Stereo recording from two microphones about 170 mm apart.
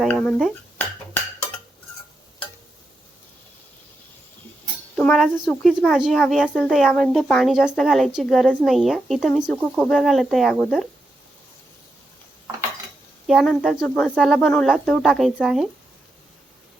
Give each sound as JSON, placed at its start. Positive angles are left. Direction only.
{"t": 0.0, "sound": "speech", "side_deg": 5}
{"t": 4.9, "sound": "a woman's voice", "side_deg": 5}
{"t": 13.2, "sound": "a woman's voice", "side_deg": 0}